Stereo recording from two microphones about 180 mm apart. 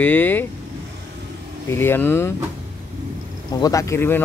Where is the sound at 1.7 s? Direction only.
10° left (ahead or behind).